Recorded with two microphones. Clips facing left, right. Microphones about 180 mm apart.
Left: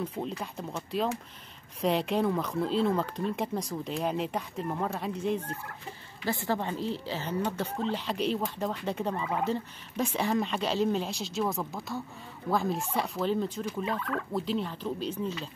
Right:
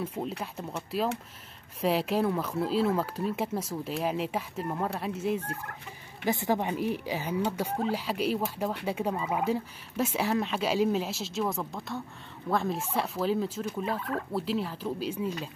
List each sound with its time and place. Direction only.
0.0 s speech: 5° right (ahead or behind)
6.2 s speech: 15° right (ahead or behind)
13.9 s speech: 30° right (ahead or behind)
14.3 s speech: 5° right (ahead or behind)